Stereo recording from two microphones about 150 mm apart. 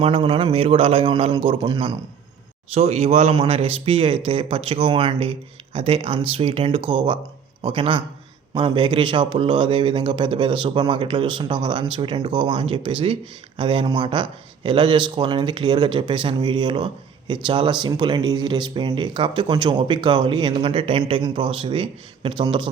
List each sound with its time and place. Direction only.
0.0 s speech: 40° right (ahead or behind)
2.7 s speech: 45° right (ahead or behind)